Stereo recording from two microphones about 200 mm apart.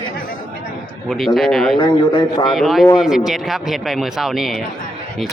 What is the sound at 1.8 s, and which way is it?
Speech, 25° left (ahead or behind).